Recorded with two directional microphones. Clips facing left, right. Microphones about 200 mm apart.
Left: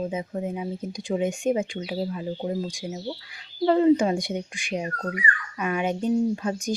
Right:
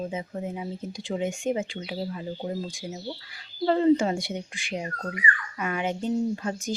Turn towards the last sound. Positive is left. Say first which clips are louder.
# left 3 dB
turn(degrees=15)  # may be behind; listen again after turning